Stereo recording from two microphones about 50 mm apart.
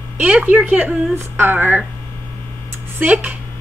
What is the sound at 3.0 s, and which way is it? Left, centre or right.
Speech, right.